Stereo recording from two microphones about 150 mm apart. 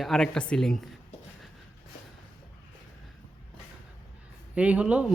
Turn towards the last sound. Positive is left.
turn(degrees=-10)  # may be behind; listen again after turning